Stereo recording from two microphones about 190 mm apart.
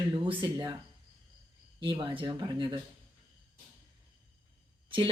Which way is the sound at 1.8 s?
25° right (ahead or behind).